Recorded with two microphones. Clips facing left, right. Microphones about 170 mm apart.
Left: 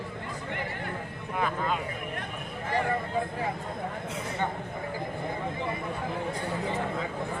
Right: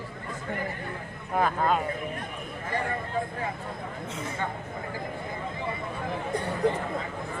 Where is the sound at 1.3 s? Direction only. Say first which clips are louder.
Right 5 dB; 45° right (ahead or behind).